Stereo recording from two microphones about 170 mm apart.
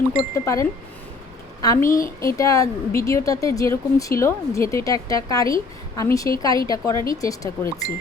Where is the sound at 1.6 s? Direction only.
15° left (ahead or behind).